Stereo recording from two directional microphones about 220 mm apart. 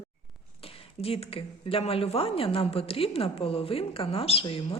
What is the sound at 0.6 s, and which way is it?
Speech, 25° left (ahead or behind).